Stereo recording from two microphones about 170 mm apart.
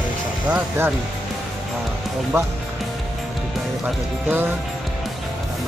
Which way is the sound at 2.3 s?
15° right (ahead or behind).